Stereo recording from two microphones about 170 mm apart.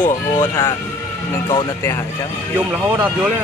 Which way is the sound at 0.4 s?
20° left (ahead or behind).